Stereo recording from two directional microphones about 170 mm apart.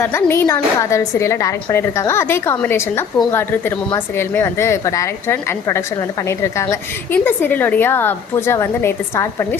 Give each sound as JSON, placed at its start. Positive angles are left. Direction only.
{"t": 0.0, "sound": "a woman's voice", "side_deg": 15}